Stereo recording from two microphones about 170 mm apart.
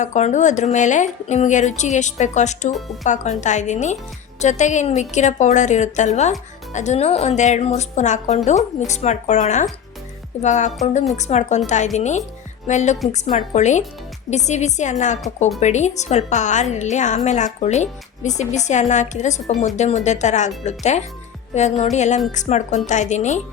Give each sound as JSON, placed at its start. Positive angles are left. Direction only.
{"t": 0.0, "sound": "a woman's voice", "side_deg": 45}